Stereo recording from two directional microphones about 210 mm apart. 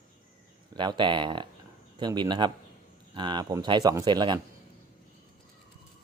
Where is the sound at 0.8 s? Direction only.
20° right (ahead or behind).